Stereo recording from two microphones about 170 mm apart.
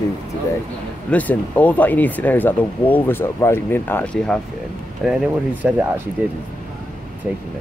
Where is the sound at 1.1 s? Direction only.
10° left (ahead or behind).